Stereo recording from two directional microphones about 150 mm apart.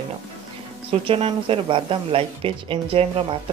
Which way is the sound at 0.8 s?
40° right (ahead or behind).